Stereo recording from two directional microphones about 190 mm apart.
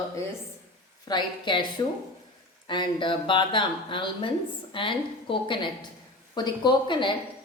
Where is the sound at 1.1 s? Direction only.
25° left (ahead or behind).